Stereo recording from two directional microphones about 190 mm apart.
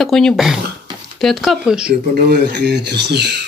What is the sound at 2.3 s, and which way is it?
Speech, 65° right (ahead or behind).